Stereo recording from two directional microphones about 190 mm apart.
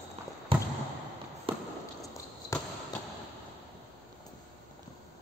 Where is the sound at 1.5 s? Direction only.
30° right (ahead or behind).